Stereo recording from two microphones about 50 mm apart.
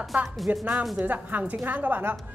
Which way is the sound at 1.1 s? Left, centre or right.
Right.